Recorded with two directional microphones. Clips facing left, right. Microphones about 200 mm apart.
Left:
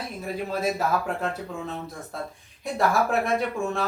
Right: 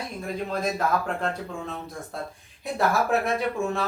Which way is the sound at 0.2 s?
5° left (ahead or behind).